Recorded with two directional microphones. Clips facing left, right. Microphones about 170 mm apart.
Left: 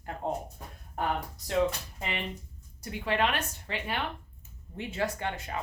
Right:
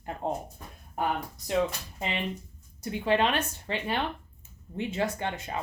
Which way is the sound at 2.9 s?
25° right (ahead or behind).